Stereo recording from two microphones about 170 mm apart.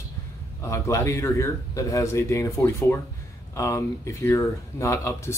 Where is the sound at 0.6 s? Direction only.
15° left (ahead or behind).